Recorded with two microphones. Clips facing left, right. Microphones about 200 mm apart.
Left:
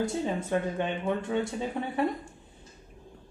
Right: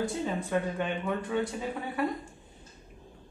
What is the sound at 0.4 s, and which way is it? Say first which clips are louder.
Speech: left 1 dB; 25° left (ahead or behind).